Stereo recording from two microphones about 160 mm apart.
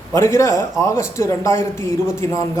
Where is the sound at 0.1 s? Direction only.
15° left (ahead or behind).